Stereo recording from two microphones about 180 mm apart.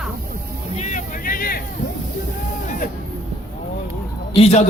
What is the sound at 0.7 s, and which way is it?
Vehicle, 40° left (ahead or behind).